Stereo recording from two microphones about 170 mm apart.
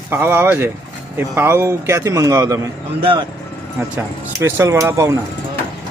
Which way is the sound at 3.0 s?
30° right (ahead or behind).